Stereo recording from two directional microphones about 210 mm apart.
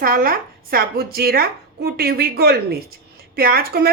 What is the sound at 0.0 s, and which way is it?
A woman's voice, 45° right (ahead or behind).